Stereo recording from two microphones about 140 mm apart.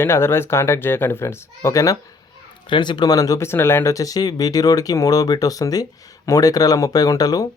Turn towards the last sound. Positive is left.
turn(degrees=25)  # may be behind; listen again after turning